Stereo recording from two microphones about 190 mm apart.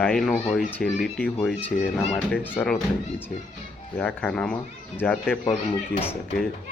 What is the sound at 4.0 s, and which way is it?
Speech, 5° left (ahead or behind).